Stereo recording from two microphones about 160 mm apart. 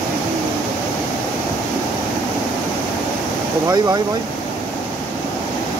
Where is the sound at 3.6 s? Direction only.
25° right (ahead or behind).